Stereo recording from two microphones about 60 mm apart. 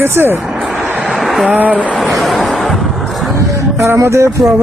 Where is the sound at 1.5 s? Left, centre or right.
Right.